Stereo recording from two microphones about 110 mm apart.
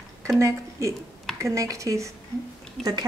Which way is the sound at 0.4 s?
30° right (ahead or behind).